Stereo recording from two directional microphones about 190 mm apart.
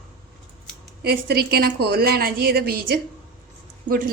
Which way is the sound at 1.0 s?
55° right (ahead or behind).